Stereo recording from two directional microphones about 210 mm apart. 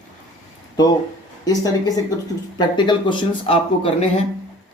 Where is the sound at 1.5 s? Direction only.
15° left (ahead or behind).